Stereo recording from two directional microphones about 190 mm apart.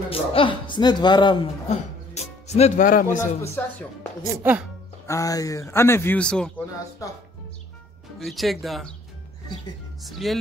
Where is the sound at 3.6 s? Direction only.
10° left (ahead or behind).